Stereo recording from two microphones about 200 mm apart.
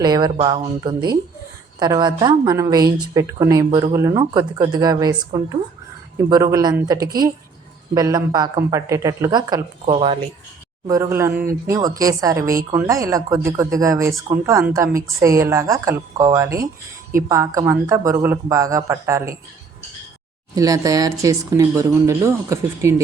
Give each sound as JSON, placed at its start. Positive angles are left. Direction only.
{"t": 0.0, "sound": "speech", "side_deg": -20}
{"t": 10.8, "sound": "speech", "side_deg": -15}
{"t": 20.6, "sound": "speech", "side_deg": -15}